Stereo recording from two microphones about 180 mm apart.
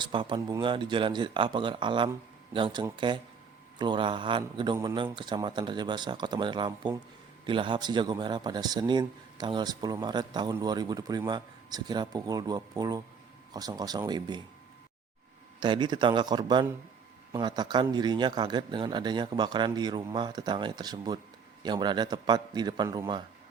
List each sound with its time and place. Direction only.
0.0 s speech: 25° right (ahead or behind)
15.6 s speech: 25° right (ahead or behind)